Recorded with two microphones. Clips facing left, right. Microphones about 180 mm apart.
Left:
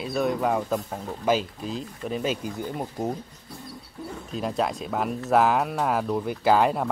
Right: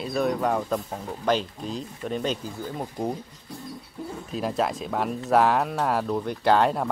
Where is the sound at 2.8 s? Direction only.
5° left (ahead or behind).